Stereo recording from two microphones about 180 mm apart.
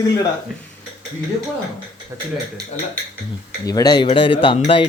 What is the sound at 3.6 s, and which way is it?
Speech, 20° left (ahead or behind).